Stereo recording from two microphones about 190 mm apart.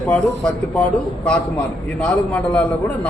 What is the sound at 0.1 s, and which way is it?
Speech, 5° left (ahead or behind).